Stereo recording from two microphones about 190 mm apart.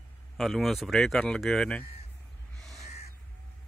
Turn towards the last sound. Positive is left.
turn(degrees=35)  # may be behind; listen again after turning